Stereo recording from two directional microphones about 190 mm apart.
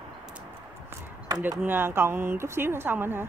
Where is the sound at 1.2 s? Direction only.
20° right (ahead or behind).